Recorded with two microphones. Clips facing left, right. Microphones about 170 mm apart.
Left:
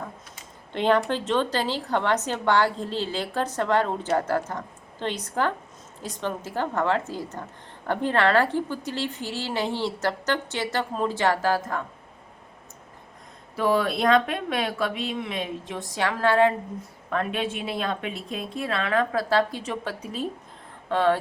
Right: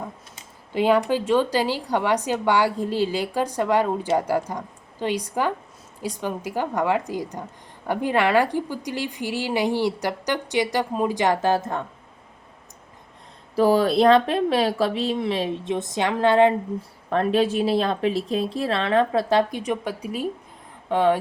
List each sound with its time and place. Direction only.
0.7 s a woman's voice: 10° right (ahead or behind)
13.6 s a woman's voice: 35° right (ahead or behind)
15.7 s speech: 20° right (ahead or behind)
17.1 s a woman's voice: 35° right (ahead or behind); by 21.2 s 15° right (ahead or behind)